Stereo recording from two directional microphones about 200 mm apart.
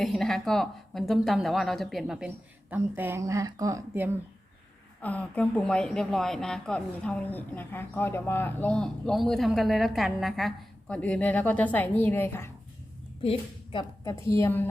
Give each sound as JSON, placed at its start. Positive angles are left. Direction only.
{"t": 0.0, "sound": "speech", "side_deg": 0}
{"t": 5.0, "sound": "speech", "side_deg": 5}
{"t": 13.2, "sound": "a woman's voice", "side_deg": 25}